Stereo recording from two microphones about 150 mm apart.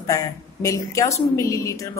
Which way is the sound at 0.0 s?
20° left (ahead or behind).